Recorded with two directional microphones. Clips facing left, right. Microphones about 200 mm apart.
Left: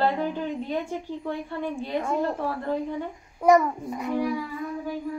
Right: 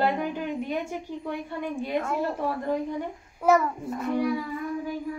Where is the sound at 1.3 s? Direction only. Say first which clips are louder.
Left 2 dB; 15° right (ahead or behind).